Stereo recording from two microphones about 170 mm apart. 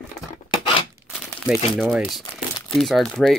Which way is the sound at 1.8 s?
Centre (ahead or behind).